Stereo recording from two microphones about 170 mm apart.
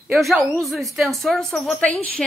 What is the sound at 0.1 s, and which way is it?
Speech, centre (ahead or behind).